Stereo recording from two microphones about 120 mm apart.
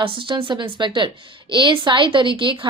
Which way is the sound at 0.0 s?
45° right (ahead or behind).